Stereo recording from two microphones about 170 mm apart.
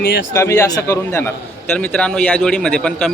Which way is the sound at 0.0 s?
65° left (ahead or behind).